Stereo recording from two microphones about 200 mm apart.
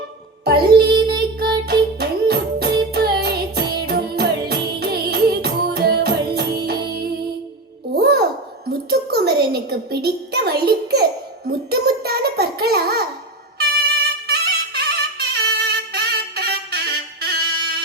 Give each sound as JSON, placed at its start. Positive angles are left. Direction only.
{"t": 0.4, "sound": "child singing", "side_deg": -55}
{"t": 1.6, "sound": "music", "side_deg": -55}
{"t": 7.9, "sound": "a sound", "side_deg": -50}
{"t": 13.6, "sound": "music", "side_deg": -50}